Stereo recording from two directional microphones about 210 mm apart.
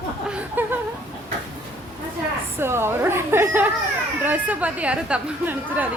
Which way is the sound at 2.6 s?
10° right (ahead or behind).